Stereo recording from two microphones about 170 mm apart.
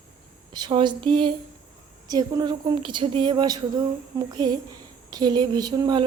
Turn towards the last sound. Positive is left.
turn(degrees=-25)  # may be behind; listen again after turning